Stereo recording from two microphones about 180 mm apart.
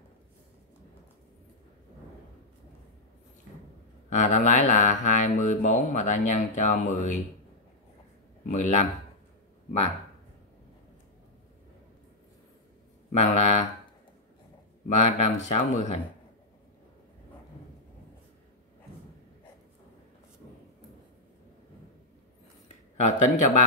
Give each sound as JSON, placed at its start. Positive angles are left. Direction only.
{"t": 4.1, "sound": "speech", "side_deg": 40}
{"t": 8.5, "sound": "speech", "side_deg": 40}
{"t": 13.1, "sound": "speech", "side_deg": 40}
{"t": 14.9, "sound": "speech", "side_deg": 35}
{"t": 22.9, "sound": "speech", "side_deg": 40}